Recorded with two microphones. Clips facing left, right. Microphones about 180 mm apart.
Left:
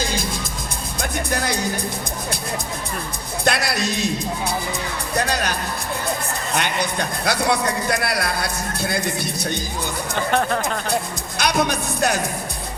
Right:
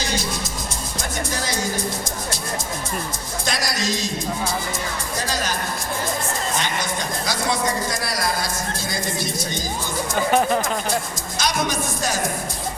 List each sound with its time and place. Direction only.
1.3 s music: 60° left (ahead or behind)
3.4 s a man's voice: 60° left (ahead or behind)
5.1 s a man's voice: 60° left (ahead or behind)
10.2 s speech: 10° right (ahead or behind)
11.3 s a man's voice: 60° left (ahead or behind)